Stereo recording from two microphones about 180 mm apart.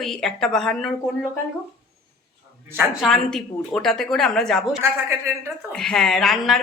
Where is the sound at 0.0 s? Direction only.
Centre (ahead or behind).